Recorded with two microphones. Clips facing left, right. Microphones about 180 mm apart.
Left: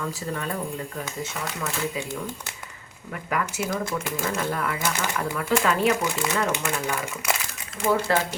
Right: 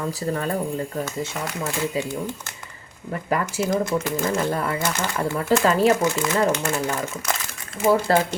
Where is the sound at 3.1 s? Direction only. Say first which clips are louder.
Right 4 dB; 35° right (ahead or behind).